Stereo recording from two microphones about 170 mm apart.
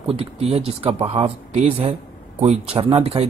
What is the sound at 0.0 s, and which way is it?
Speech, 35° right (ahead or behind).